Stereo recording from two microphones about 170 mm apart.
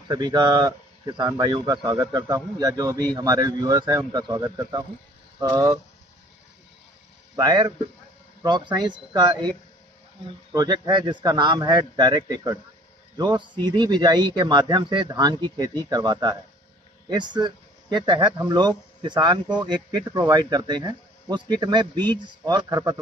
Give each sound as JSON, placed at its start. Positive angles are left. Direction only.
{"t": 0.1, "sound": "speech", "side_deg": -25}
{"t": 7.3, "sound": "speech", "side_deg": -25}
{"t": 10.5, "sound": "speech", "side_deg": -25}
{"t": 13.7, "sound": "speech", "side_deg": -25}